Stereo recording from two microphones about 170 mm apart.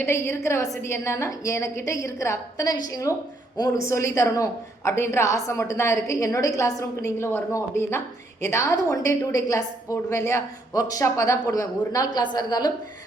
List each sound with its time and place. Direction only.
0.0 s a woman's voice: 15° left (ahead or behind)